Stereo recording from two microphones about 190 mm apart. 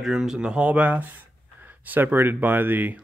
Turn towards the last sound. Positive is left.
turn(degrees=-10)  # may be behind; listen again after turning